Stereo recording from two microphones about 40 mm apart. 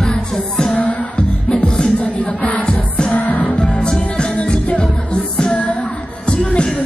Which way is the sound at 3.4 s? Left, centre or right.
Left.